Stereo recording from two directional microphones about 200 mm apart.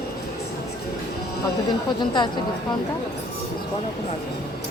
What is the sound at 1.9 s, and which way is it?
Speech, 20° left (ahead or behind).